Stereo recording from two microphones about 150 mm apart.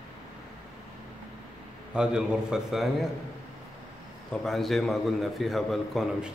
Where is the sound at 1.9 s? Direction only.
5° right (ahead or behind).